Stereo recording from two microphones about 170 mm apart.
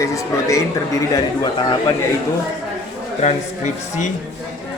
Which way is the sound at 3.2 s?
45° left (ahead or behind).